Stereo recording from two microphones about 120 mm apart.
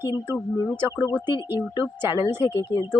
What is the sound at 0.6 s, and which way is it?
Speech, 30° left (ahead or behind).